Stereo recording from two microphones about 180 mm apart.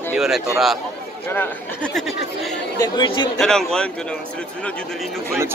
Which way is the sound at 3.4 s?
5° left (ahead or behind).